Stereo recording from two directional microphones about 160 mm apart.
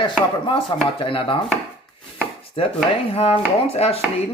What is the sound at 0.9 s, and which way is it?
Speech, 35° left (ahead or behind).